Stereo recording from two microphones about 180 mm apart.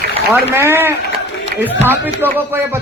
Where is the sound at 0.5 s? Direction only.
15° right (ahead or behind).